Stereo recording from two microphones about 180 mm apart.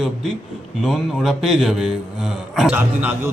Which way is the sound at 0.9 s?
Centre (ahead or behind).